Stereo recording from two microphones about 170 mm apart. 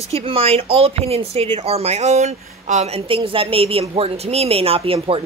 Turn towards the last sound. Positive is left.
turn(degrees=-35)  # may be behind; listen again after turning